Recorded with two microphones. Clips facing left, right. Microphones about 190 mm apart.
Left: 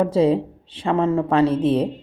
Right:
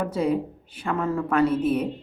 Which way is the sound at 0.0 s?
30° left (ahead or behind).